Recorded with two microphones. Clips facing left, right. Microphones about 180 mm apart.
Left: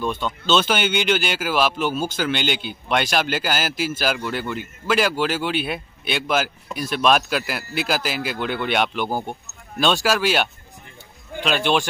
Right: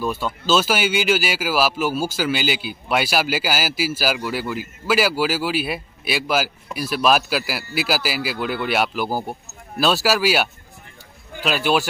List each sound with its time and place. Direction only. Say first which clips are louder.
0.0 s speech: right 1 dB; 5° right (ahead or behind)